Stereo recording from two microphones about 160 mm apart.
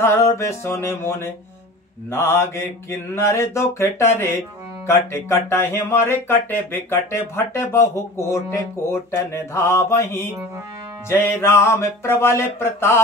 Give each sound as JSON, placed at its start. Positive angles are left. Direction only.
{"t": 0.0, "sound": "speech", "side_deg": 15}